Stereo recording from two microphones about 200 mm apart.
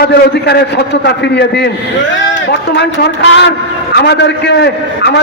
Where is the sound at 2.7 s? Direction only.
60° left (ahead or behind).